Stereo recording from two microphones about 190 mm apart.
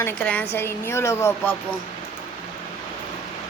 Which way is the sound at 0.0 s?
10° left (ahead or behind).